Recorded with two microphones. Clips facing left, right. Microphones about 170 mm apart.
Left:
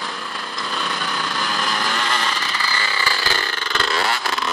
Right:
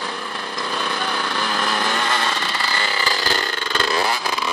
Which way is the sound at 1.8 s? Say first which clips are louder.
Right 1 dB; 20° right (ahead or behind).